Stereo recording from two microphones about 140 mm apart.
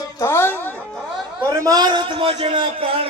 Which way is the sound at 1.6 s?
25° right (ahead or behind).